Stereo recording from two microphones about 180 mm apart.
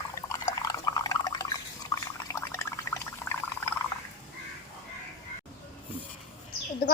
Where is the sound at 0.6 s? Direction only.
20° left (ahead or behind).